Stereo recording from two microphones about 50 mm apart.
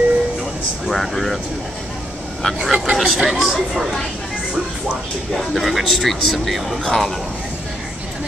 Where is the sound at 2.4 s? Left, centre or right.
Centre.